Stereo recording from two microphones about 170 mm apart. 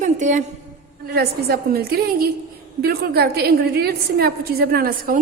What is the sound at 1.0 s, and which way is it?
A woman's voice, 70° right (ahead or behind).